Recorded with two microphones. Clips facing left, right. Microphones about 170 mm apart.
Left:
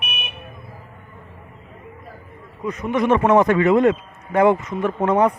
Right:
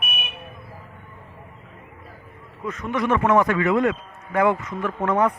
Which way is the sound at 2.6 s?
15° left (ahead or behind).